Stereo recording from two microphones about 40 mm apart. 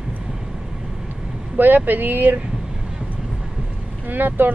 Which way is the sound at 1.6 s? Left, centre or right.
Right.